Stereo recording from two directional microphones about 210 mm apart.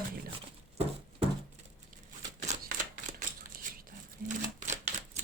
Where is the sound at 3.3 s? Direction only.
40° right (ahead or behind).